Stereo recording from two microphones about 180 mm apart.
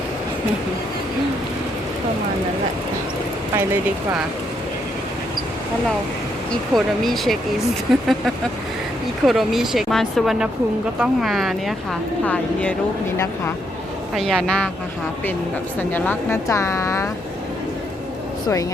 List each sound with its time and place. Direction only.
6.5 s speech: centre (ahead or behind)
9.2 s speech: centre (ahead or behind)
14.2 s speech: 5° left (ahead or behind)
15.8 s speech: 10° left (ahead or behind)